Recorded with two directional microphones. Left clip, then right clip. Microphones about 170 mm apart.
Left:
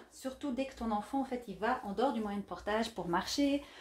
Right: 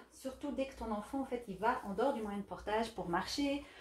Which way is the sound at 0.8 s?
40° left (ahead or behind).